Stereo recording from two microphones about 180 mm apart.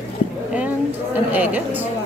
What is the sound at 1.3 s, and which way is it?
Speech, 10° right (ahead or behind).